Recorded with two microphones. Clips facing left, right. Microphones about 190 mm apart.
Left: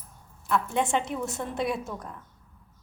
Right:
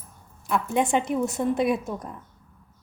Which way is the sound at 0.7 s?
15° right (ahead or behind).